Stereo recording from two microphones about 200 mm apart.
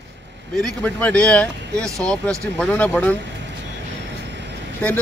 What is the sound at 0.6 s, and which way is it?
Speech, 5° left (ahead or behind).